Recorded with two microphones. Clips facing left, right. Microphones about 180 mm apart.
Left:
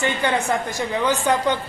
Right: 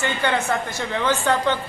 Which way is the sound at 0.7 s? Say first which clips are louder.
Left 1 dB; 15° left (ahead or behind).